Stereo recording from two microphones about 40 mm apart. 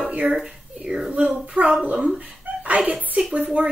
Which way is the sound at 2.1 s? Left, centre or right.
Right.